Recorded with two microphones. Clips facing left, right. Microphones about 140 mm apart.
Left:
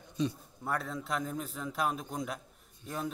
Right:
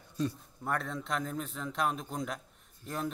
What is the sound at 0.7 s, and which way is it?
A man's voice, 5° left (ahead or behind).